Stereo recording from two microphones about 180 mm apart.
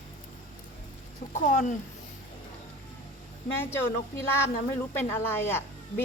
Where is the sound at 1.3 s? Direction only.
40° left (ahead or behind).